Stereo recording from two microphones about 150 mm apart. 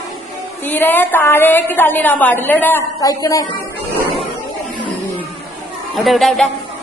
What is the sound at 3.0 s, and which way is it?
Speech, 25° left (ahead or behind).